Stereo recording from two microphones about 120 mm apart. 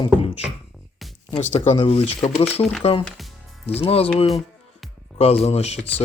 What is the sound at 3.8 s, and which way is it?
Speech, 55° left (ahead or behind).